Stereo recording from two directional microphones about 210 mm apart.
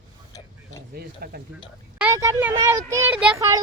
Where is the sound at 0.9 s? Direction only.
45° right (ahead or behind).